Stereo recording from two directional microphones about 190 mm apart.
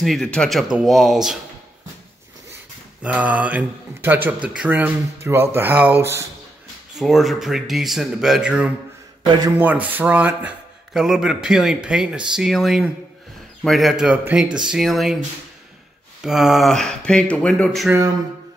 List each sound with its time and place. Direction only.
0.0 s speech: centre (ahead or behind)
3.0 s speech: 5° right (ahead or behind)
7.0 s speech: centre (ahead or behind)
9.2 s speech: 20° right (ahead or behind)
9.6 s speech: 10° right (ahead or behind)
16.2 s speech: centre (ahead or behind)